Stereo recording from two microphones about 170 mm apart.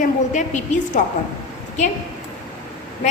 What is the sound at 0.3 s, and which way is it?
Speech, 45° left (ahead or behind).